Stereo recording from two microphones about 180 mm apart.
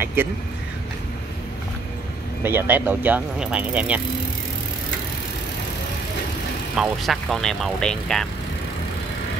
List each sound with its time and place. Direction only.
0.0 s speech: 10° right (ahead or behind)
2.4 s speech: 10° right (ahead or behind)
6.8 s speech: centre (ahead or behind)